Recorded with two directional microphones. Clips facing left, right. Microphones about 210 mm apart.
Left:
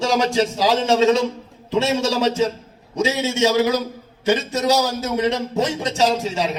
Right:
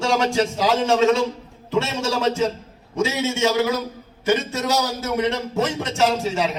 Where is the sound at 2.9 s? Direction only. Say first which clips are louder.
Left 2 dB; 20° left (ahead or behind).